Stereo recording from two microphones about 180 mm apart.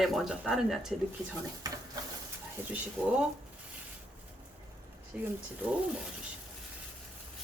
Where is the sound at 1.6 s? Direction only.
20° right (ahead or behind).